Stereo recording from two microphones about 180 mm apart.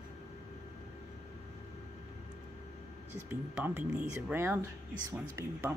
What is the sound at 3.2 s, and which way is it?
Speech, 10° right (ahead or behind).